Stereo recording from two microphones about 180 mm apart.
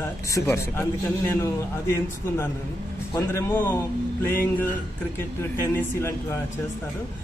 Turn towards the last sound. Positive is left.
turn(degrees=15)  # may be behind; listen again after turning